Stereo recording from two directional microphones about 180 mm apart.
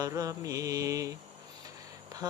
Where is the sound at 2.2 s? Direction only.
20° right (ahead or behind).